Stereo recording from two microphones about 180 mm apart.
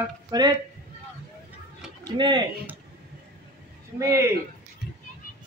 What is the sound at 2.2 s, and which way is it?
Speech, 25° right (ahead or behind).